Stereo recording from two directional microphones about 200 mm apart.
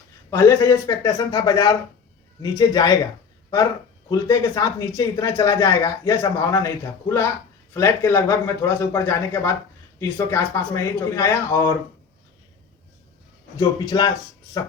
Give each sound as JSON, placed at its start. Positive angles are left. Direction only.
{"t": 0.3, "sound": "a man's voice", "side_deg": 15}
{"t": 4.1, "sound": "a man's voice", "side_deg": 15}
{"t": 7.7, "sound": "a man's voice", "side_deg": 10}
{"t": 13.6, "sound": "a man's voice", "side_deg": 20}